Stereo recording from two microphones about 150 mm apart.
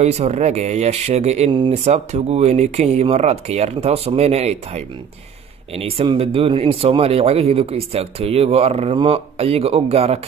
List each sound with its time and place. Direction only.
0.0 s speech: 45° right (ahead or behind)
1.5 s speech: 35° right (ahead or behind)
1.9 s speech: 45° right (ahead or behind)